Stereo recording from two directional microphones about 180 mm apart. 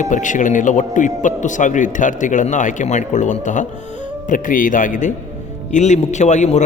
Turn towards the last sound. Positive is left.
turn(degrees=40)  # may be behind; listen again after turning